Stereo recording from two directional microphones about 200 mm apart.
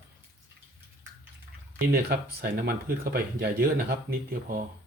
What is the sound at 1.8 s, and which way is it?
Speech, 50° right (ahead or behind).